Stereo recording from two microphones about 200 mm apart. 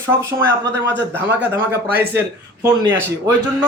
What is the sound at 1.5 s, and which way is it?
Speech, 10° right (ahead or behind).